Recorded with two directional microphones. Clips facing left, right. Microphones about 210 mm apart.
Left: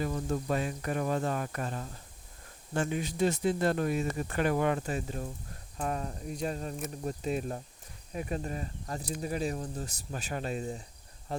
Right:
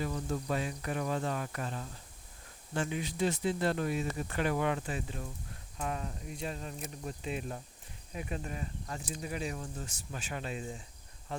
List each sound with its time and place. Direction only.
0.0 s speech: 45° left (ahead or behind)